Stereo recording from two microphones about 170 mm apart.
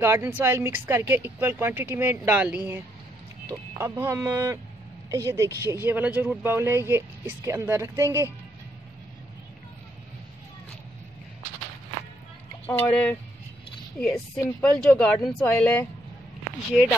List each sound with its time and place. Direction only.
0.0 s speech: 15° right (ahead or behind)
12.6 s speech: 10° left (ahead or behind)